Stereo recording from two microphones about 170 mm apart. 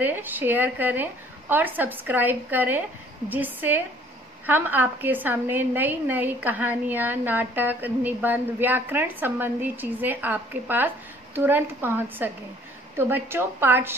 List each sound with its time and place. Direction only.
0.0 s a woman's voice: 10° right (ahead or behind)